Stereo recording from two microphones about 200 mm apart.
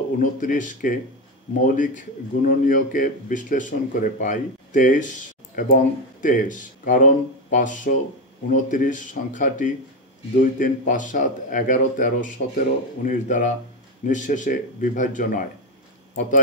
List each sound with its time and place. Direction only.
0.2 s speech: 40° left (ahead or behind)